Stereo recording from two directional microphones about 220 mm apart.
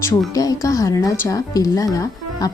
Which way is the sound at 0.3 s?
15° left (ahead or behind).